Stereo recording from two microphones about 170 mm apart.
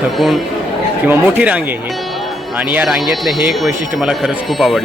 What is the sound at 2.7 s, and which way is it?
Speech, 5° right (ahead or behind).